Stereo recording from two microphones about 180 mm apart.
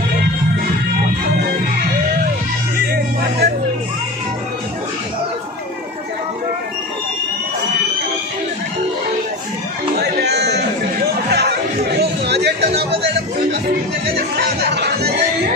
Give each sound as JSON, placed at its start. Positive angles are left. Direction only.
{"t": 2.9, "sound": "music", "side_deg": -65}
{"t": 9.9, "sound": "music", "side_deg": -65}
{"t": 11.2, "sound": "chatter", "side_deg": -60}
{"t": 14.0, "sound": "music", "side_deg": -60}